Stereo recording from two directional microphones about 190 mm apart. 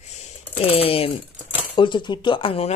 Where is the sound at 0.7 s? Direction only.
30° left (ahead or behind).